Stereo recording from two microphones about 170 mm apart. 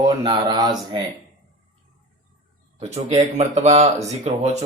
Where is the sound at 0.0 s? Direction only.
25° right (ahead or behind).